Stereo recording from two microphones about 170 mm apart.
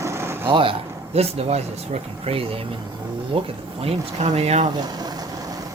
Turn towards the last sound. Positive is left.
turn(degrees=-20)  # may be behind; listen again after turning